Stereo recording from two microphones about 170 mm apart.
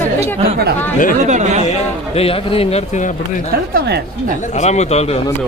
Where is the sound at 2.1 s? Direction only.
35° left (ahead or behind).